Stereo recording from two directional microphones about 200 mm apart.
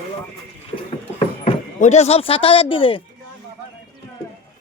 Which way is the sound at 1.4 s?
35° left (ahead or behind).